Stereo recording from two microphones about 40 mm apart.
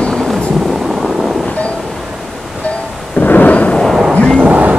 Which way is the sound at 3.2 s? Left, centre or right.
Left.